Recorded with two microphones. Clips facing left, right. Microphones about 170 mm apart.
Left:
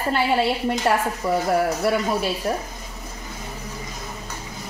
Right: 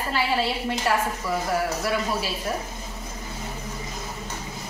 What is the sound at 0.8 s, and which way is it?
Speech, 30° left (ahead or behind).